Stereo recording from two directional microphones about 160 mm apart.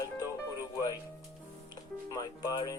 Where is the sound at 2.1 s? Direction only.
20° left (ahead or behind).